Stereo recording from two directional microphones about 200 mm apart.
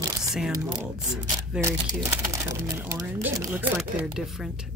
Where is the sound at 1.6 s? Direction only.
15° right (ahead or behind).